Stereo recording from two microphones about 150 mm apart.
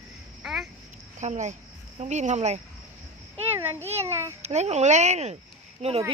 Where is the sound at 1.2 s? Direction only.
50° right (ahead or behind).